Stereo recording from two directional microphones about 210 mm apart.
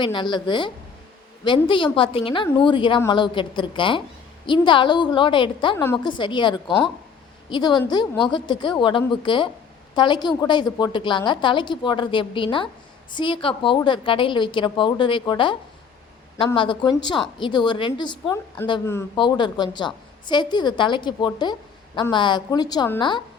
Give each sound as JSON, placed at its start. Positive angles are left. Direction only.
{"t": 0.0, "sound": "a woman's voice", "side_deg": 20}
{"t": 5.7, "sound": "a woman's voice", "side_deg": 10}
{"t": 16.6, "sound": "a woman's voice", "side_deg": 25}